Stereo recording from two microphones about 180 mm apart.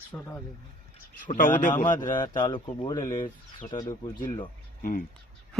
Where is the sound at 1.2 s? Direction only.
50° left (ahead or behind).